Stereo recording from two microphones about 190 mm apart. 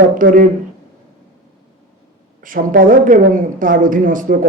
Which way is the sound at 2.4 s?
45° right (ahead or behind).